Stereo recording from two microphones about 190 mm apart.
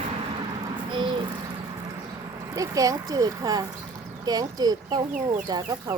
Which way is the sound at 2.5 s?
20° right (ahead or behind).